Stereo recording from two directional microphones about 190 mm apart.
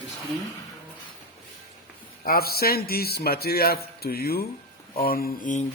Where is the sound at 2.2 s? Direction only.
50° left (ahead or behind).